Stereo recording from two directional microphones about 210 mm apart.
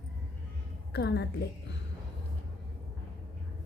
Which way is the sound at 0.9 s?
50° left (ahead or behind).